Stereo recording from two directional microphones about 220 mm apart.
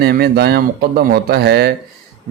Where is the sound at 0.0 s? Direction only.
45° right (ahead or behind).